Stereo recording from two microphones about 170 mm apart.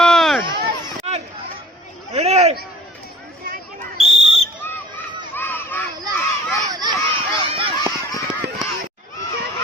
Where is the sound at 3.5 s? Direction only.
45° right (ahead or behind).